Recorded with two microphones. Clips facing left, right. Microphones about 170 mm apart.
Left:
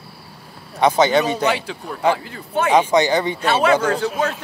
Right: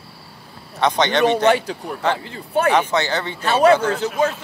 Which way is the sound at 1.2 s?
55° right (ahead or behind).